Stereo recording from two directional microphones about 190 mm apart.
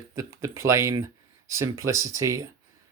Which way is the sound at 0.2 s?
15° right (ahead or behind).